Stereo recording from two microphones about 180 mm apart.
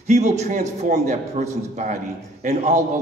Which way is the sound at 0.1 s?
40° right (ahead or behind).